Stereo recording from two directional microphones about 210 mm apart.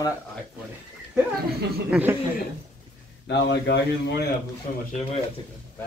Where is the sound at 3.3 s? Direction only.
55° left (ahead or behind).